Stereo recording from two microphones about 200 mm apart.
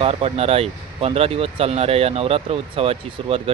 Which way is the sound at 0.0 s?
30° right (ahead or behind).